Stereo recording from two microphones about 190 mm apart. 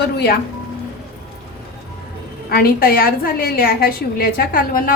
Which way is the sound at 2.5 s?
55° left (ahead or behind).